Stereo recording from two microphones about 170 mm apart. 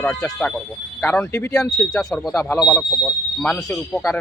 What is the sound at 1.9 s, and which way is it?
Speech, 5° left (ahead or behind).